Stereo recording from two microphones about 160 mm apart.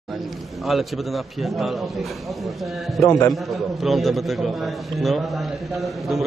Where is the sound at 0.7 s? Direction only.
Centre (ahead or behind).